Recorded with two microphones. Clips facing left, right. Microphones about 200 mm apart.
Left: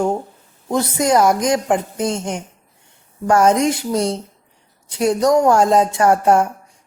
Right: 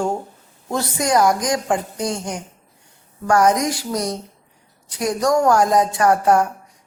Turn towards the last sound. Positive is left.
turn(degrees=25)  # may be behind; listen again after turning